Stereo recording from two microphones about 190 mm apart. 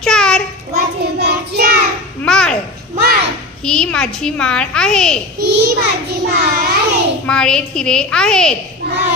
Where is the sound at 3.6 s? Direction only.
5° left (ahead or behind).